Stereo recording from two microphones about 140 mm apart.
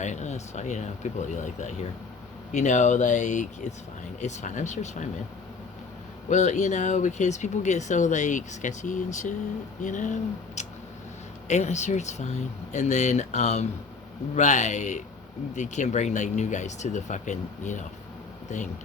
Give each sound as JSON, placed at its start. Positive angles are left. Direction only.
{"t": 0.0, "sound": "speech", "side_deg": 55}
{"t": 6.2, "sound": "speech", "side_deg": 60}